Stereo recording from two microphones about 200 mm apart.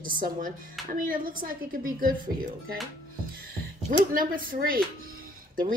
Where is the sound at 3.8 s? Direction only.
40° right (ahead or behind).